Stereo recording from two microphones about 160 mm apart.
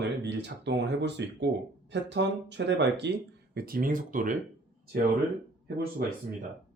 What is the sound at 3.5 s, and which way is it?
Speech, 70° right (ahead or behind).